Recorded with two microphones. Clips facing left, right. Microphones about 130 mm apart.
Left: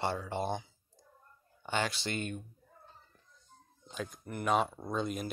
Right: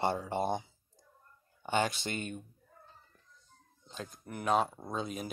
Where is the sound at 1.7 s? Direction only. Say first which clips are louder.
Right 3 dB; 45° right (ahead or behind).